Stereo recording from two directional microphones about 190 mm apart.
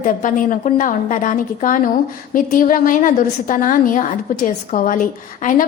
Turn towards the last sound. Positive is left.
turn(degrees=45)  # may be behind; listen again after turning